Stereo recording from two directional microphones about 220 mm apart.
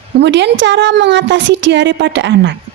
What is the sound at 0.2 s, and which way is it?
A woman's voice, 50° right (ahead or behind).